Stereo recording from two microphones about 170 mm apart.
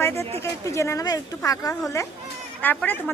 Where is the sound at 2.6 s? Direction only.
10° left (ahead or behind).